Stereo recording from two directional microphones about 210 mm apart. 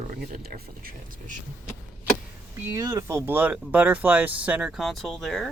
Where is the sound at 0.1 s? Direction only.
45° right (ahead or behind).